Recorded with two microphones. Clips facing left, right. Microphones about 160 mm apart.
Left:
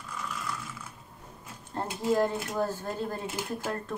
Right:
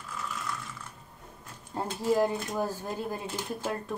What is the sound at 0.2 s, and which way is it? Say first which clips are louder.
Ratchet: even; centre (ahead or behind).